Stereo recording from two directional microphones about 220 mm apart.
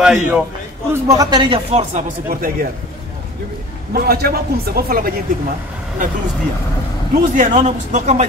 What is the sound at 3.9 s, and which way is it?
A man's voice, 45° right (ahead or behind).